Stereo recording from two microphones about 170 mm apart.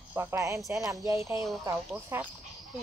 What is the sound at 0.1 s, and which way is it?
Speech, 15° right (ahead or behind).